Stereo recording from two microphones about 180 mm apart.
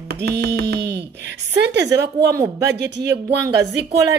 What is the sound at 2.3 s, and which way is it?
Speech, 15° right (ahead or behind).